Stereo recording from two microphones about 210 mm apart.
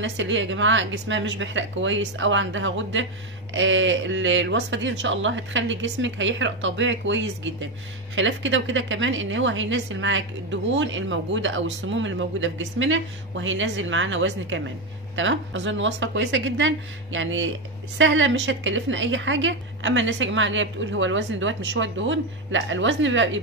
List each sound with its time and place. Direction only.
0.0 s speech: 60° right (ahead or behind)